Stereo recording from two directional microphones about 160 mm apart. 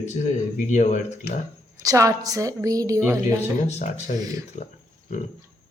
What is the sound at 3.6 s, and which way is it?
Speech, 45° left (ahead or behind).